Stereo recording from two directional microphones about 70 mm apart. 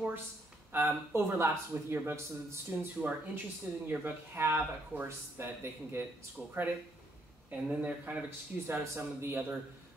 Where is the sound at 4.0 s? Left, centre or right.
Right.